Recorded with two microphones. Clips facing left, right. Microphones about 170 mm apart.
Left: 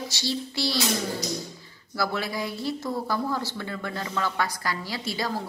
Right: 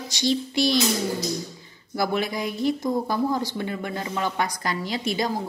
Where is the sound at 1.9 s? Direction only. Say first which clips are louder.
Right 4 dB; 20° right (ahead or behind).